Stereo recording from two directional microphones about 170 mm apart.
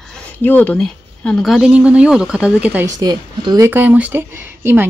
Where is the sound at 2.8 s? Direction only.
20° right (ahead or behind).